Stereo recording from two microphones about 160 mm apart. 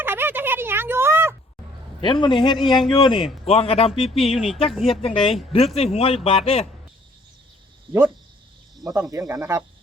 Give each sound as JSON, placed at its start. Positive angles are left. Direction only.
{"t": 0.0, "sound": "a sound", "side_deg": -15}
{"t": 2.0, "sound": "a man's voice", "side_deg": 30}
{"t": 2.6, "sound": "speech", "side_deg": 0}
{"t": 2.9, "sound": "a man's voice", "side_deg": 30}
{"t": 4.7, "sound": "speech", "side_deg": 0}
{"t": 5.0, "sound": "a man's voice", "side_deg": 35}
{"t": 9.0, "sound": "speech", "side_deg": -20}